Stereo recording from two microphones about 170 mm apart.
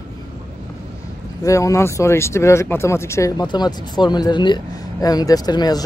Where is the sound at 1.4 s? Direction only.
20° left (ahead or behind).